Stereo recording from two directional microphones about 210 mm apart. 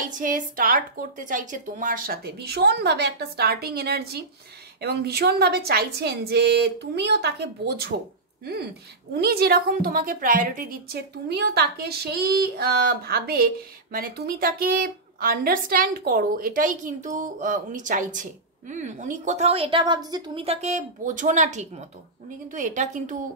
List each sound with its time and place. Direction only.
0.2 s a woman's voice: 40° right (ahead or behind)
9.2 s a woman's voice: 50° right (ahead or behind)